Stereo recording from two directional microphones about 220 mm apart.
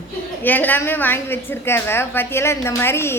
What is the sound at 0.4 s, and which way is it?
A woman's voice, 10° left (ahead or behind).